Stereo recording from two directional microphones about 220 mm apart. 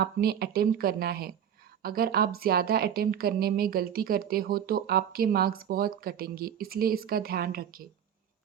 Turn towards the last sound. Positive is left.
turn(degrees=-40)  # may be behind; listen again after turning